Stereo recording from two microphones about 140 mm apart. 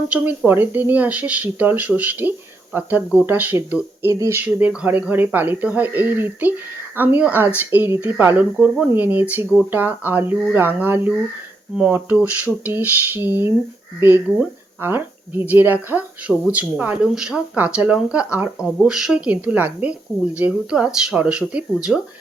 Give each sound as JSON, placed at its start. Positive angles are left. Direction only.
{"t": 0.1, "sound": "speech", "side_deg": -10}
{"t": 8.6, "sound": "speech", "side_deg": -5}